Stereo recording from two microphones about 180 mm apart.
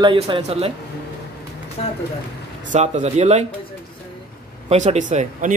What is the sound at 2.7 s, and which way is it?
Speech, 40° right (ahead or behind).